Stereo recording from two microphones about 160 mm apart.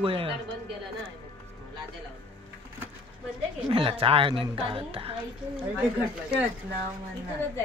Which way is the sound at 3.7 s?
35° right (ahead or behind).